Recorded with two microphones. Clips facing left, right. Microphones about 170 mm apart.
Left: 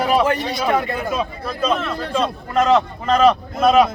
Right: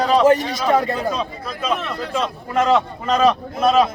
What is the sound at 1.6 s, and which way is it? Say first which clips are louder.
A man's voice: left 3 dB; 10° right (ahead or behind).